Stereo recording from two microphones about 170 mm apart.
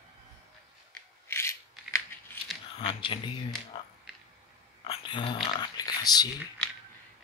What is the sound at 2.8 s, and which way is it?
Speech, 30° left (ahead or behind).